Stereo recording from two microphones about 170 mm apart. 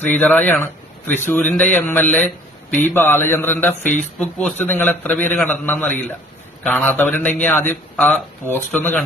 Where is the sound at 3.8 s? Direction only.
45° left (ahead or behind).